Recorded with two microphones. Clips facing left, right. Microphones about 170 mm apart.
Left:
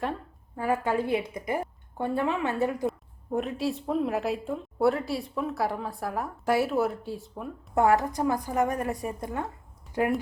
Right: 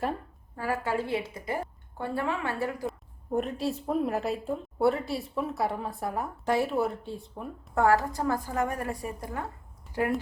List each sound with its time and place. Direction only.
0.5 s a woman's voice: 20° left (ahead or behind)
3.3 s a woman's voice: centre (ahead or behind)
7.8 s a woman's voice: 20° left (ahead or behind)